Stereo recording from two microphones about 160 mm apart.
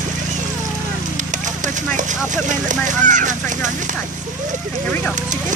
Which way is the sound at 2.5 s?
50° right (ahead or behind).